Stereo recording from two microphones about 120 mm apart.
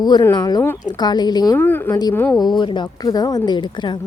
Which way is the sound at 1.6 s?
15° left (ahead or behind).